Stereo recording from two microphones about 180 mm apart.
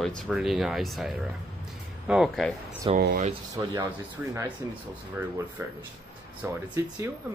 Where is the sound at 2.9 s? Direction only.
30° right (ahead or behind).